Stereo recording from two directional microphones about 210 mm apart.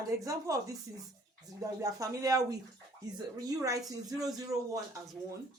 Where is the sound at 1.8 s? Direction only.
15° right (ahead or behind).